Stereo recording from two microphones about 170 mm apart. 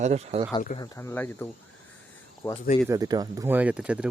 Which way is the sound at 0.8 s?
20° left (ahead or behind).